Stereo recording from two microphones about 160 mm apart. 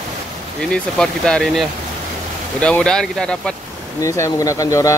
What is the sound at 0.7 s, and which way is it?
Speech, 5° left (ahead or behind).